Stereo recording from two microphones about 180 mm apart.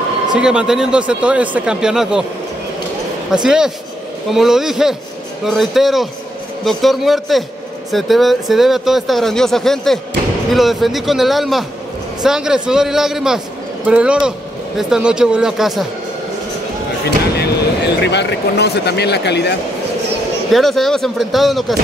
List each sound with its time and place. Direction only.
0.3 s speech: 5° right (ahead or behind)
3.4 s speech: 5° right (ahead or behind)
17.4 s speech: 70° left (ahead or behind)
20.5 s speech: centre (ahead or behind)